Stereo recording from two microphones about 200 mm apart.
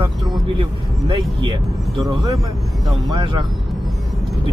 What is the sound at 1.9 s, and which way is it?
Speech, 20° right (ahead or behind).